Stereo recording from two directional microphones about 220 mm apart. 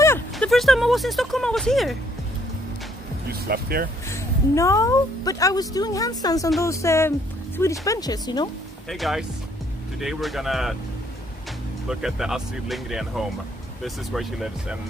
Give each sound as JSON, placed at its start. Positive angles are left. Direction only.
{"t": 0.0, "sound": "a sound", "side_deg": 10}
{"t": 0.5, "sound": "speech", "side_deg": 0}
{"t": 3.3, "sound": "speech", "side_deg": -45}
{"t": 4.1, "sound": "a woman's voice", "side_deg": 15}
{"t": 8.8, "sound": "speech", "side_deg": 0}
{"t": 11.9, "sound": "speech", "side_deg": 0}